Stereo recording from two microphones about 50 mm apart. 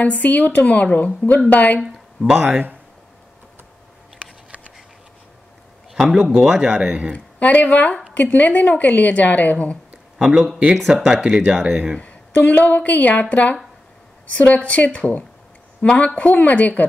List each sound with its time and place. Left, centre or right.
0.0 s a woman's voice: left
6.0 s speech: centre
7.3 s a woman's voice: left
10.1 s speech: centre
10.8 s speech: centre
11.2 s speech: centre
11.5 s speech: centre
12.0 s a woman's voice: left